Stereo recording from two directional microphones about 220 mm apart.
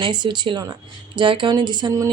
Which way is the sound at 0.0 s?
20° right (ahead or behind).